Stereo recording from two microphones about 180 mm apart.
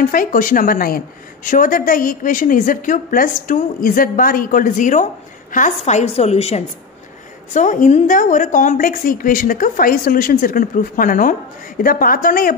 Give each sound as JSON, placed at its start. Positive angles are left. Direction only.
{"t": 0.1, "sound": "a woman's voice", "side_deg": 50}
{"t": 5.9, "sound": "a woman's voice", "side_deg": 40}